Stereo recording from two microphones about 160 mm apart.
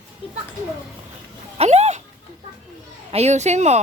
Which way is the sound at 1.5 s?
40° right (ahead or behind).